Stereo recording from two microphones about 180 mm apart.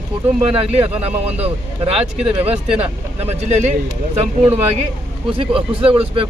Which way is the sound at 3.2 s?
35° right (ahead or behind).